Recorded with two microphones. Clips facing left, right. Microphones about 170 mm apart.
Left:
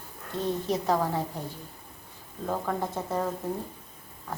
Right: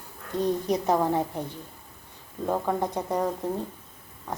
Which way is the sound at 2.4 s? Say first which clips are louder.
Right 4 dB; 15° right (ahead or behind).